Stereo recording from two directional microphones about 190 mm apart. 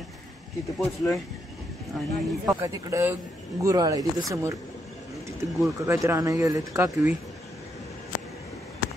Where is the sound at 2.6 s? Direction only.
15° right (ahead or behind).